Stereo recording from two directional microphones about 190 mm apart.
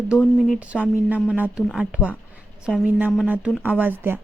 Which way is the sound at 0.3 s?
Centre (ahead or behind).